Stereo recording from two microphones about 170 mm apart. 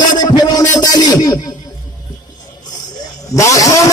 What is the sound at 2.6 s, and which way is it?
Vehicle, 20° left (ahead or behind).